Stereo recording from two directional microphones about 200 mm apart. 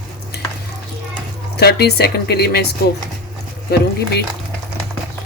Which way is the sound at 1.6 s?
55° left (ahead or behind).